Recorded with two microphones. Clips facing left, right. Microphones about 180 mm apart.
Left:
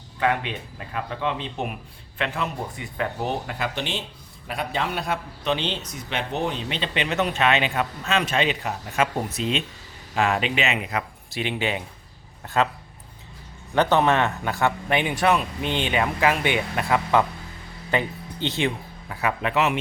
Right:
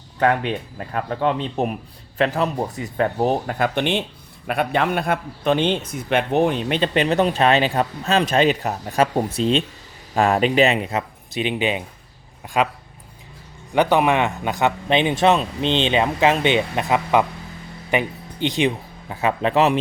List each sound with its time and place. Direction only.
0.2 s a man's voice: 45° right (ahead or behind)
10.2 s speech: 40° right (ahead or behind); by 12.7 s 15° right (ahead or behind)
13.7 s speech: 15° right (ahead or behind); by 19.8 s 35° right (ahead or behind)